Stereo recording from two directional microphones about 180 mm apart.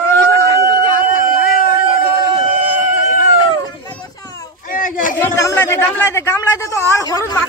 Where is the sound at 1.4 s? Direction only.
55° left (ahead or behind).